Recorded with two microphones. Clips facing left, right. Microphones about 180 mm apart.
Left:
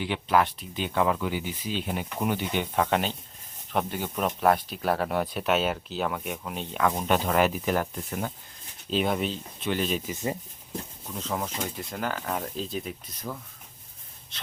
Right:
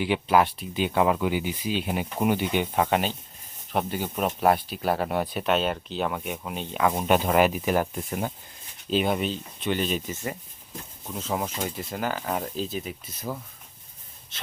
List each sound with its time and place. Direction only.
0.0 s speech: 5° right (ahead or behind)
8.9 s speech: centre (ahead or behind)
10.1 s speech: 15° left (ahead or behind)
11.3 s speech: 15° right (ahead or behind)
14.3 s gasp: 5° right (ahead or behind)